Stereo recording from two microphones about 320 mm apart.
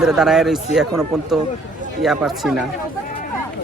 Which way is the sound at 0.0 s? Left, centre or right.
Centre.